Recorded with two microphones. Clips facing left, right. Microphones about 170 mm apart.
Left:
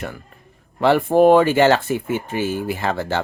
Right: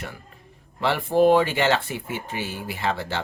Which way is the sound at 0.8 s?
50° left (ahead or behind).